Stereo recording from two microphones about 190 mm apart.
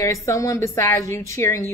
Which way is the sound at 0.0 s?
15° left (ahead or behind).